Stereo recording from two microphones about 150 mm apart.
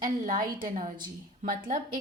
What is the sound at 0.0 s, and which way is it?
A woman's voice, 70° right (ahead or behind).